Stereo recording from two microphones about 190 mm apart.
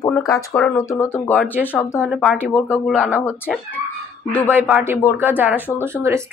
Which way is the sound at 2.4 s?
10° left (ahead or behind).